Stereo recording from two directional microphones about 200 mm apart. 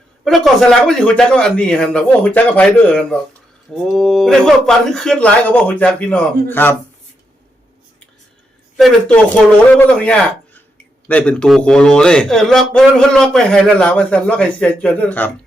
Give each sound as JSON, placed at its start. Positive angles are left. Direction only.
{"t": 0.3, "sound": "a man's voice", "side_deg": 0}
{"t": 8.7, "sound": "a man's voice", "side_deg": 5}